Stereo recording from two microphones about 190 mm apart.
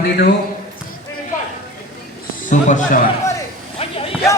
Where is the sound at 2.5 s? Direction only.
40° left (ahead or behind).